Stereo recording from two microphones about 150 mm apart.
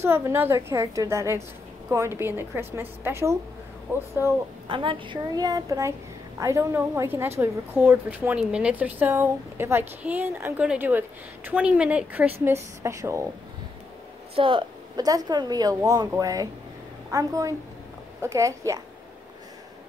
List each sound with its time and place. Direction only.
0.0 s a woman's voice: 15° right (ahead or behind)
4.6 s a woman's voice: 35° right (ahead or behind)
14.3 s speech: 35° right (ahead or behind)